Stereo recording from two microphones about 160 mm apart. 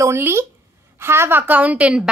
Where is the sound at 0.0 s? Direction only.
15° right (ahead or behind).